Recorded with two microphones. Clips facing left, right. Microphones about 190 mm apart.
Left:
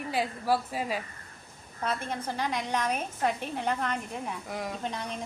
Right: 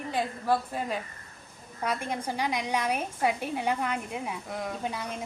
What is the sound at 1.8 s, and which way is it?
A woman's voice, 10° right (ahead or behind).